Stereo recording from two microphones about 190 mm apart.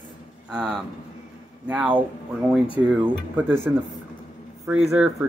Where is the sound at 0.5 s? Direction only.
5° right (ahead or behind).